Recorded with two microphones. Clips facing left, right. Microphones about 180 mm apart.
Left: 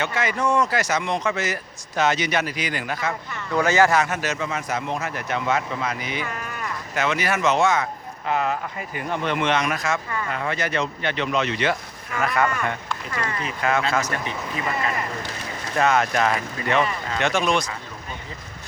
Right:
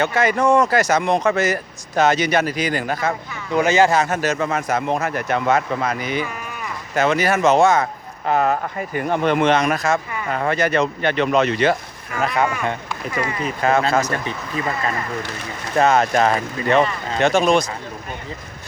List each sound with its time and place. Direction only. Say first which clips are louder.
0.0 s speech: right 6 dB; 40° right (ahead or behind)
3.7 s speech: right 2 dB; 25° right (ahead or behind)
4.0 s speech: right 5 dB; 45° right (ahead or behind)
6.2 s a sound: right 1 dB; 5° right (ahead or behind)
6.9 s speech: right 6 dB; 40° right (ahead or behind); by 12.5 s 25° right (ahead or behind)
12.9 s speech: right 4 dB; 10° right (ahead or behind)
13.4 s speech: right 5 dB; 35° right (ahead or behind)
15.7 s speech: right 4 dB; 40° right (ahead or behind)